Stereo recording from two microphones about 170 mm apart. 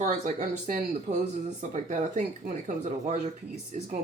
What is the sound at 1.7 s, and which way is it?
Speech, 45° right (ahead or behind).